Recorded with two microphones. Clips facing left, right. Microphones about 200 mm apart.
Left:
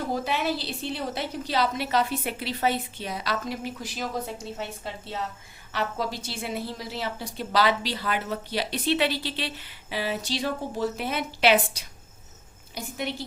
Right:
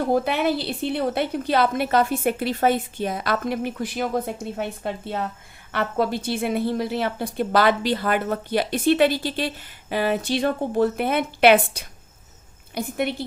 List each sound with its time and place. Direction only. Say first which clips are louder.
0.1 s a woman's voice: right 6 dB; 55° right (ahead or behind)